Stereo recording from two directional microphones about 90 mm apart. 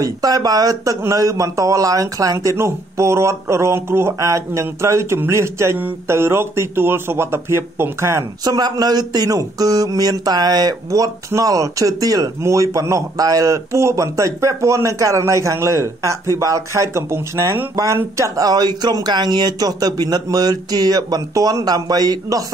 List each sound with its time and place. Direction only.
0.0 s a man's voice: 45° right (ahead or behind)
8.5 s a man's voice: 45° right (ahead or behind)